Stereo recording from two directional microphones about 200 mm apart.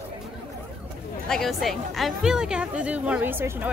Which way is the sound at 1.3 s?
Centre (ahead or behind).